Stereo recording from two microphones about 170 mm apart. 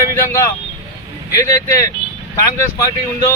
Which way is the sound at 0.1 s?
20° left (ahead or behind).